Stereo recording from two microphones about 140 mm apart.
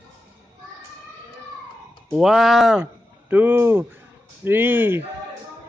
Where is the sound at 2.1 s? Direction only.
5° right (ahead or behind).